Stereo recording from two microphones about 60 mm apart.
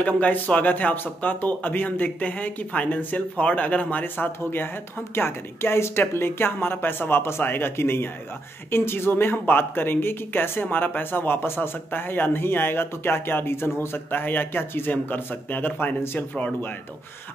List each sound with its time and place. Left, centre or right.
0.0 s speech: left